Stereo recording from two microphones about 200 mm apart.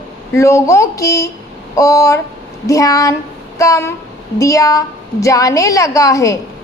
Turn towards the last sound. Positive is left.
turn(degrees=15)  # may be behind; listen again after turning